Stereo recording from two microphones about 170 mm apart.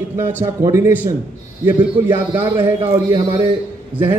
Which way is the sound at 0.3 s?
15° right (ahead or behind).